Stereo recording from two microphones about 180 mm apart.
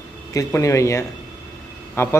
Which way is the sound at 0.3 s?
20° left (ahead or behind).